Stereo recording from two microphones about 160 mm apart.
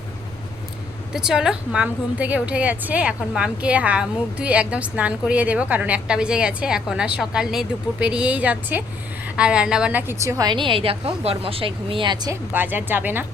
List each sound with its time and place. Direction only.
1.1 s a woman's voice: 5° right (ahead or behind); by 12.4 s 25° right (ahead or behind)
12.5 s a woman's voice: 10° right (ahead or behind)